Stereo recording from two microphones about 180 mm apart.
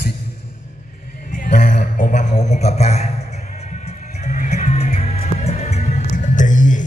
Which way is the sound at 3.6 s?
40° left (ahead or behind).